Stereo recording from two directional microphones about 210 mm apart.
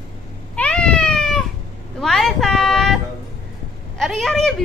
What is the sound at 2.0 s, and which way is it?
A woman's voice, centre (ahead or behind).